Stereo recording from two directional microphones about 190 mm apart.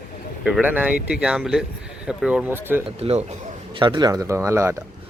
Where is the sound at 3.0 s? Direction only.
30° right (ahead or behind); by 4.7 s 15° right (ahead or behind).